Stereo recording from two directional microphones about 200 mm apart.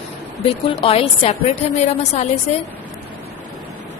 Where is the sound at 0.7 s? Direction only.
30° left (ahead or behind).